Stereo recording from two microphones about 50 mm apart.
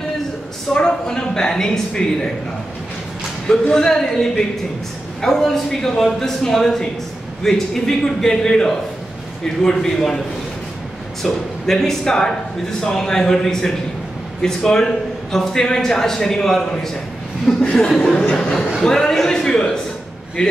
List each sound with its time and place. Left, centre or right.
0.7 s speech: centre
3.4 s speech: centre
11.2 s speech: centre